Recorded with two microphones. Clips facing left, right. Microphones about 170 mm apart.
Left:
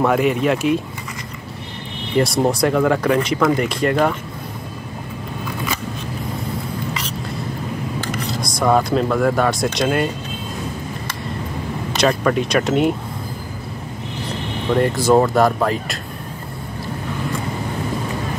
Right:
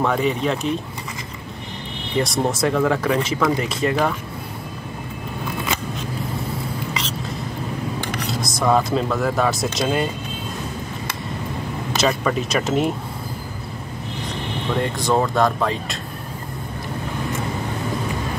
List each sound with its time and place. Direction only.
0.0 s speech: 5° left (ahead or behind)
2.2 s speech: centre (ahead or behind)
8.0 s a sound: 25° right (ahead or behind)
8.5 s speech: centre (ahead or behind)
12.0 s speech: 5° right (ahead or behind)
15.0 s speech: 5° left (ahead or behind)